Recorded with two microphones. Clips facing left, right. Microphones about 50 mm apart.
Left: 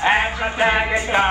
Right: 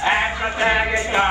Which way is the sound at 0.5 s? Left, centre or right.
Centre.